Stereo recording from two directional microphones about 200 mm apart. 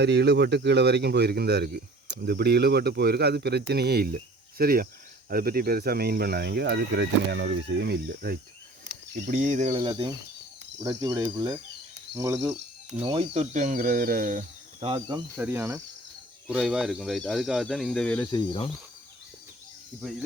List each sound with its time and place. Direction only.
0.0 s speech: 55° right (ahead or behind)
9.1 s speech: 35° right (ahead or behind)
9.8 s speech: 20° right (ahead or behind)
13.0 s speech: 30° right (ahead or behind)
14.9 s speech: 20° right (ahead or behind); by 18.3 s 5° left (ahead or behind)
18.3 s speech: 25° left (ahead or behind)